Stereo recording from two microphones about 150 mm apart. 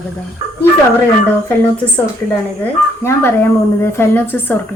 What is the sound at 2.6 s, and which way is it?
Speech, 15° left (ahead or behind).